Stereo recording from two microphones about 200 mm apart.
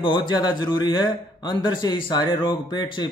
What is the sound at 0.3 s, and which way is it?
Speech, 20° left (ahead or behind).